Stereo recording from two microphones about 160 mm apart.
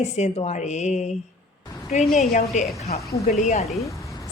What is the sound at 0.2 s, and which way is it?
Speech, 45° left (ahead or behind).